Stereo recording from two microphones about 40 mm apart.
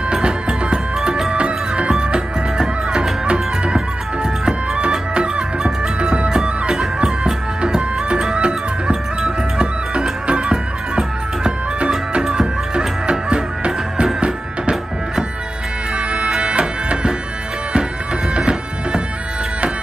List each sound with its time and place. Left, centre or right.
0.1 s music: right
0.9 s music: centre
1.3 s music: right
16.3 s music: centre
16.5 s music: right
18.3 s music: right